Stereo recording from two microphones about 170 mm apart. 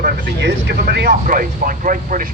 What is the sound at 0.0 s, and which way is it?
Speech, 70° right (ahead or behind).